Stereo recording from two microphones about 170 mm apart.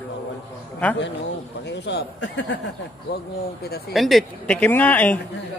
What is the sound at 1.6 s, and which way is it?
Speech, 90° left.